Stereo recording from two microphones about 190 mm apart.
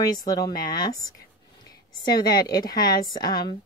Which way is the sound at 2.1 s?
20° left (ahead or behind).